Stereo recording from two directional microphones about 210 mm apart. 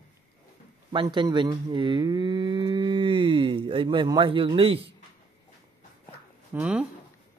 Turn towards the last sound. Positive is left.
turn(degrees=-5)  # may be behind; listen again after turning